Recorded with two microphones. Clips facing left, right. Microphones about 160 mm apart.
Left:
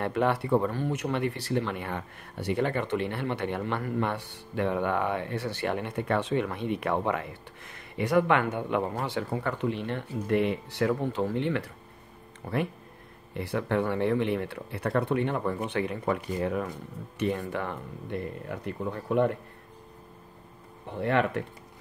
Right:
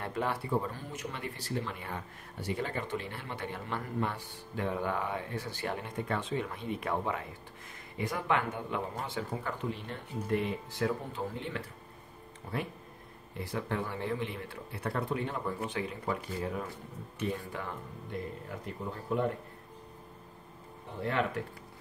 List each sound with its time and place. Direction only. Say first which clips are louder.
0.0 s speech: left 7 dB; 70° left (ahead or behind)
13.3 s speech: left 7 dB; 65° left (ahead or behind)
21.0 s speech: left 6 dB; 65° left (ahead or behind)